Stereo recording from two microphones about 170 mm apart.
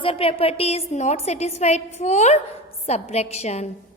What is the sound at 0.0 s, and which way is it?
A woman's voice, 35° left (ahead or behind).